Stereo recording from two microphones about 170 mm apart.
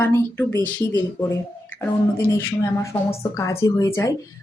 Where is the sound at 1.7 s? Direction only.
15° left (ahead or behind).